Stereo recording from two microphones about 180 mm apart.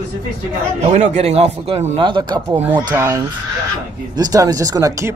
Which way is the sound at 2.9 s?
15° right (ahead or behind).